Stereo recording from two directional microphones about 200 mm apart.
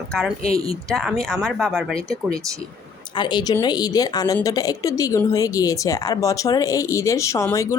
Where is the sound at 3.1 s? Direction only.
20° left (ahead or behind).